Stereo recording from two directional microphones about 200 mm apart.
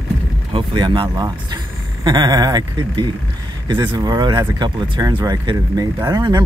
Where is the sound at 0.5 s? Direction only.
20° right (ahead or behind).